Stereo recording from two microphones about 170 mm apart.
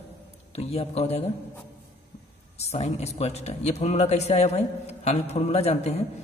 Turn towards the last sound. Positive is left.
turn(degrees=40)  # may be behind; listen again after turning